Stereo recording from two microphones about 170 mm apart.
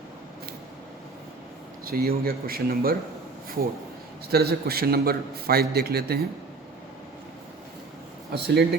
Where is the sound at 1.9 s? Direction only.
60° right (ahead or behind).